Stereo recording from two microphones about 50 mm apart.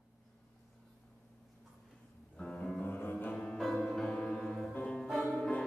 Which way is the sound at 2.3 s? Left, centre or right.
Centre.